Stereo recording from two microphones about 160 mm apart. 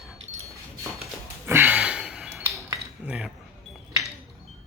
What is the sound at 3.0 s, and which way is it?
Cutlery, 5° right (ahead or behind).